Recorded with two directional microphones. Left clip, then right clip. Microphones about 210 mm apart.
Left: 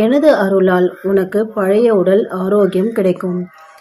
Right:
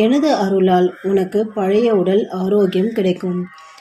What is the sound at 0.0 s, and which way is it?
Speech, 15° left (ahead or behind).